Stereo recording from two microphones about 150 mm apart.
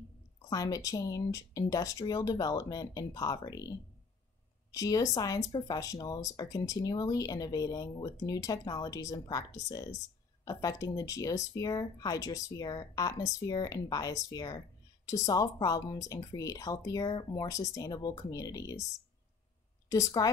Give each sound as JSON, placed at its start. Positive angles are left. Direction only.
{"t": 0.5, "sound": "speech", "side_deg": 25}
{"t": 4.7, "sound": "speech", "side_deg": 25}
{"t": 19.9, "sound": "speech", "side_deg": 25}